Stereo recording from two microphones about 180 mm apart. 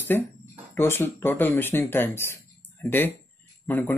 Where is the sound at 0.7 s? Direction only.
15° left (ahead or behind).